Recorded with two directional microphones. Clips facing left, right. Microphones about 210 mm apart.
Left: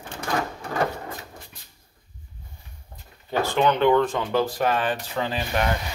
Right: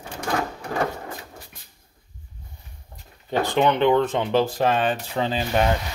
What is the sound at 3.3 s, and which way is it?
Speech, 20° right (ahead or behind).